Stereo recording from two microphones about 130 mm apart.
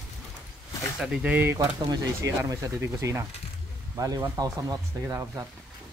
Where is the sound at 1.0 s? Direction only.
5° right (ahead or behind).